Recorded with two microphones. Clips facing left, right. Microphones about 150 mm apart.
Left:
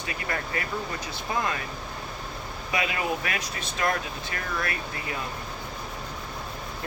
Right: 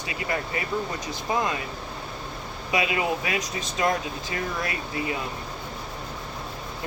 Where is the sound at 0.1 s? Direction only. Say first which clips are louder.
Right 3 dB; 20° right (ahead or behind).